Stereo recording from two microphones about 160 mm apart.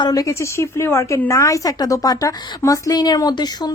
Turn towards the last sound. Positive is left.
turn(degrees=25)  # may be behind; listen again after turning